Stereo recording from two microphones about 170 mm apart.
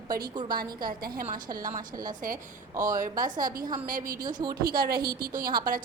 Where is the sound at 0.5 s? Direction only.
60° right (ahead or behind).